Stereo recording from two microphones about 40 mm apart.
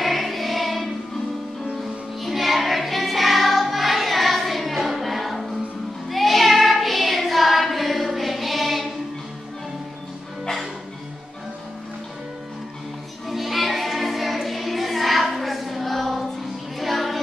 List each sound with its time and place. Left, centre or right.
0.0 s music: centre
6.0 s child singing: centre
13.3 s music: centre